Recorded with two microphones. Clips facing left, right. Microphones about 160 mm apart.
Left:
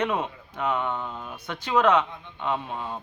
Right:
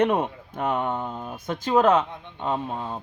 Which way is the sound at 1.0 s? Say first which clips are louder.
Right 3 dB; 30° right (ahead or behind).